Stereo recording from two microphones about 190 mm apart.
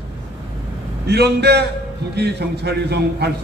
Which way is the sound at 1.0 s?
60° right (ahead or behind).